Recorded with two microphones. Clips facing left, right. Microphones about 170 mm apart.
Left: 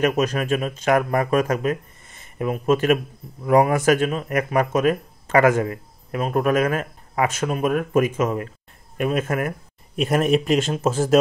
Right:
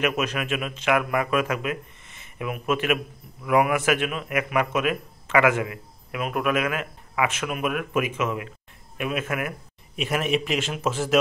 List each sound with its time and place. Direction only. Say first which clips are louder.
0.0 s speech: left 5 dB; 40° left (ahead or behind)